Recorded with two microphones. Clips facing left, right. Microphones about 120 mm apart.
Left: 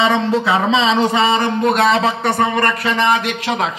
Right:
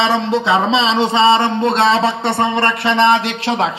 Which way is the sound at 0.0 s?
30° right (ahead or behind).